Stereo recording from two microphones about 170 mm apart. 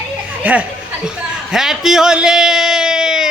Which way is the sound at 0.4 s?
5° right (ahead or behind).